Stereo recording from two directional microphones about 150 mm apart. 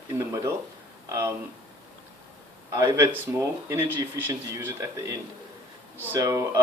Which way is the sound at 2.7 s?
20° right (ahead or behind).